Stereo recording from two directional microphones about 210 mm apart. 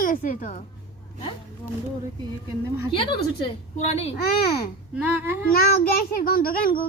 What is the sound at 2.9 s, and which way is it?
A woman's voice, 25° left (ahead or behind).